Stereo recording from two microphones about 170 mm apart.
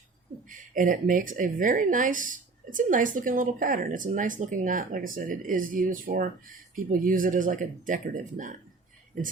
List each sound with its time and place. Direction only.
0.4 s speech: 50° right (ahead or behind)